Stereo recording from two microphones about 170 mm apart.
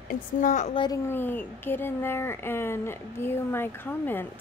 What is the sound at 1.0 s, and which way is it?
Speech, 10° left (ahead or behind).